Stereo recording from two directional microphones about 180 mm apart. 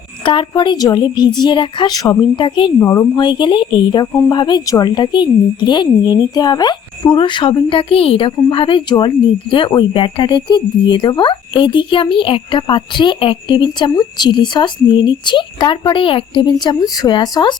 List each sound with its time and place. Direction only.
0.3 s speech: 25° left (ahead or behind)
2.7 s speech: 15° left (ahead or behind)